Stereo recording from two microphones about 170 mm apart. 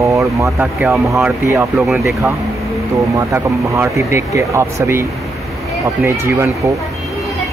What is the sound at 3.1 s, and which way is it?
Speech, 15° right (ahead or behind).